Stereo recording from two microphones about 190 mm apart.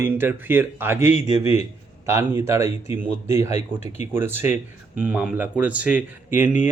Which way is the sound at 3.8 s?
35° left (ahead or behind).